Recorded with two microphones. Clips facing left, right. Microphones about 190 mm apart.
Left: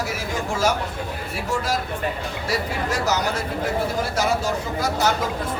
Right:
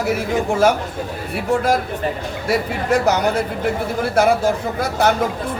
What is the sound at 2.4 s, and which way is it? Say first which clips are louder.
A man's voice: right 7 dB; 60° right (ahead or behind).